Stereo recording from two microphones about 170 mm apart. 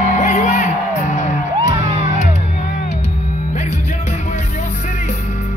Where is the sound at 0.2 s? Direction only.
45° left (ahead or behind).